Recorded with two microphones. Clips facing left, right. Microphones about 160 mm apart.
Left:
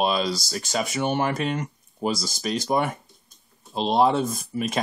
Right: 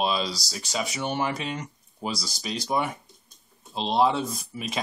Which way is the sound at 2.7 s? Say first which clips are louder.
Left 2 dB; 50° left (ahead or behind).